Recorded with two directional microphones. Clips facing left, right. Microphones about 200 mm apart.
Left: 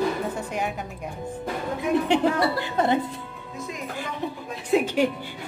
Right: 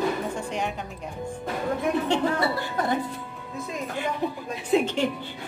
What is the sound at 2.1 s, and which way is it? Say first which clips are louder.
Speech: left 3 dB; 20° left (ahead or behind).